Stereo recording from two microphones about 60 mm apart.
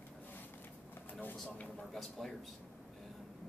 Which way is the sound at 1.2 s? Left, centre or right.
Left.